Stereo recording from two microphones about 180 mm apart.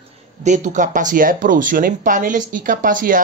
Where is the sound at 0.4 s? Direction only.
45° right (ahead or behind).